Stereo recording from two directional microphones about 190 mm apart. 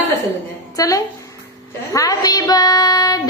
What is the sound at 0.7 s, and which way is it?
Speech, 20° left (ahead or behind).